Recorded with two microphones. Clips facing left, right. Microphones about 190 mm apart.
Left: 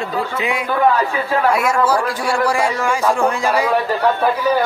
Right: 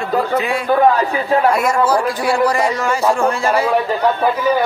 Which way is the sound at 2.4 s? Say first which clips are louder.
Right 1 dB; 10° left (ahead or behind).